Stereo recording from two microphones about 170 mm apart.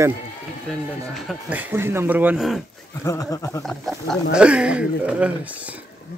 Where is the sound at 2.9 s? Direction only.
20° left (ahead or behind).